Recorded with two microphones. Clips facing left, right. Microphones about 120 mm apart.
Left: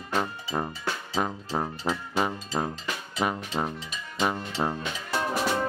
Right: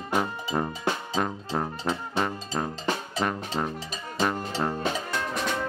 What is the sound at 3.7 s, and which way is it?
Music, 40° right (ahead or behind).